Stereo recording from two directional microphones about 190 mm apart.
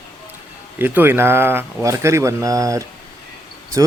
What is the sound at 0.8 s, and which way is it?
Speech, 10° right (ahead or behind).